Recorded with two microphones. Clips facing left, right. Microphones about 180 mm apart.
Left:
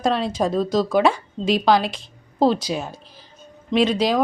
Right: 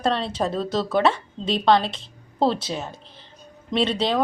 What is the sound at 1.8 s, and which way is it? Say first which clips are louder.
Speech: left 3 dB; 25° right (ahead or behind).